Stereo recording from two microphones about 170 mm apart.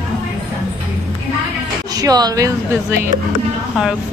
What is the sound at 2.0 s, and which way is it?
Speech, 20° right (ahead or behind).